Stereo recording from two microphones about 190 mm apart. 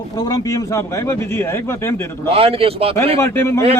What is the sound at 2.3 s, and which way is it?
Speech, 30° right (ahead or behind).